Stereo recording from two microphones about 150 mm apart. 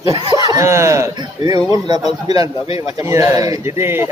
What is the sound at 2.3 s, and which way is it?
Speech, 40° left (ahead or behind).